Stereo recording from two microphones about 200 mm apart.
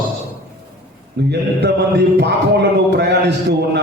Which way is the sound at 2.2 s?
55° right (ahead or behind).